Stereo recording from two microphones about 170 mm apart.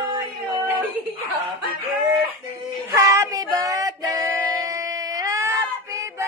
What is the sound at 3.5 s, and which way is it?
Female singing, 20° right (ahead or behind).